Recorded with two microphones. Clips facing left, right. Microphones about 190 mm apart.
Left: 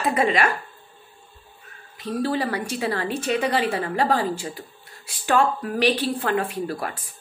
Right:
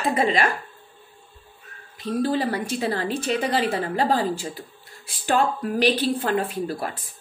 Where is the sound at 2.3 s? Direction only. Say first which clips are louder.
Right 1 dB; 35° right (ahead or behind).